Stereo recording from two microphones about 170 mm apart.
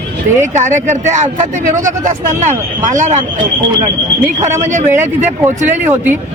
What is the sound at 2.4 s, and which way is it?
Speech, 45° right (ahead or behind).